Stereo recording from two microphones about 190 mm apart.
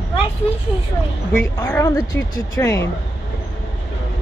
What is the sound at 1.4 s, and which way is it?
Speech, 10° left (ahead or behind).